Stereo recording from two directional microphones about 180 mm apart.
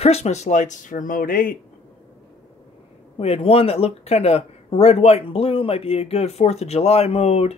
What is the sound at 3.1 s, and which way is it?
Speech, 30° left (ahead or behind).